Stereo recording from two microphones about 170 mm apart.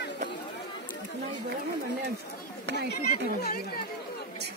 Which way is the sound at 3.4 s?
65° left (ahead or behind).